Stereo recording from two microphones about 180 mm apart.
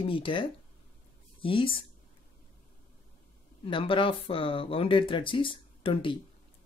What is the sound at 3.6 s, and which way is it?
Speech, 30° left (ahead or behind).